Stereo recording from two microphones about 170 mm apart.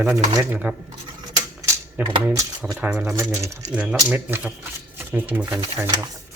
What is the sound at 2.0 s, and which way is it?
Speech, 10° right (ahead or behind).